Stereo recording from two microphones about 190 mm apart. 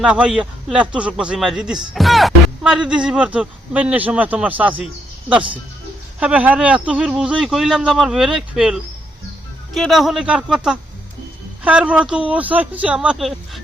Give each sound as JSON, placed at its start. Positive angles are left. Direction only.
{"t": 0.0, "sound": "a man's voice", "side_deg": -5}